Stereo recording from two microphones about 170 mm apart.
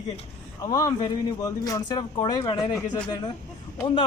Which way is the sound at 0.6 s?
20° left (ahead or behind).